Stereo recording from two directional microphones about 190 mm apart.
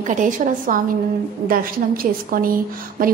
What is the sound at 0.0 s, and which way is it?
A woman's voice, 40° right (ahead or behind).